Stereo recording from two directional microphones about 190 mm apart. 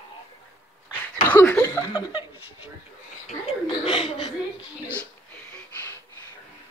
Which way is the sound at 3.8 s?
30° left (ahead or behind).